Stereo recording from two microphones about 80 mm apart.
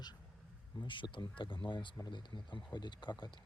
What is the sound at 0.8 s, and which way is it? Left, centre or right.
Speech, left.